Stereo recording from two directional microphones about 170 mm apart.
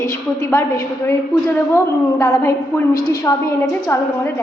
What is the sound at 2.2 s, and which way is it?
A woman's voice, 20° left (ahead or behind).